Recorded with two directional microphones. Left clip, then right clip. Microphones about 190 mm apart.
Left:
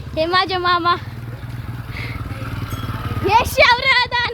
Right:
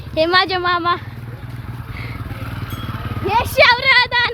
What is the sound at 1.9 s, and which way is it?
Vehicle, 20° left (ahead or behind).